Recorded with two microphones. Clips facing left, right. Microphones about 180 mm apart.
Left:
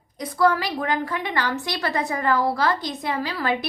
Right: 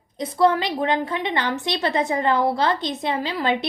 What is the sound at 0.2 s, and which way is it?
A woman's voice, 25° right (ahead or behind).